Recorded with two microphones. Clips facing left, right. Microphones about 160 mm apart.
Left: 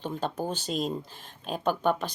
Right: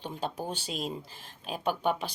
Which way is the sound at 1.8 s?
45° left (ahead or behind).